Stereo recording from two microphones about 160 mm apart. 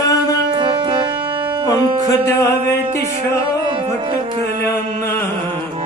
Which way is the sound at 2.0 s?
20° left (ahead or behind).